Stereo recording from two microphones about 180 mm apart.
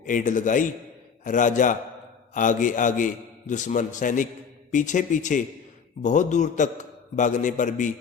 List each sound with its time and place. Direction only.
0.0 s a man's voice: 45° left (ahead or behind)